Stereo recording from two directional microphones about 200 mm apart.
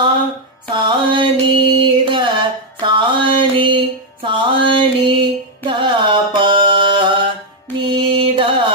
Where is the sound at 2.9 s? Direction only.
25° right (ahead or behind).